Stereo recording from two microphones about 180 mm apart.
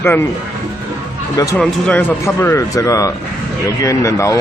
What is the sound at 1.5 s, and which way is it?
Speech, 5° left (ahead or behind).